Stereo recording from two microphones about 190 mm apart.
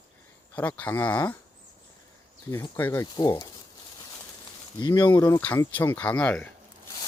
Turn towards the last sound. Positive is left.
turn(degrees=5)  # may be behind; listen again after turning